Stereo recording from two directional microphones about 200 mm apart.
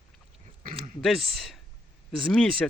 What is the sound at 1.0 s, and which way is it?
Speech, centre (ahead or behind).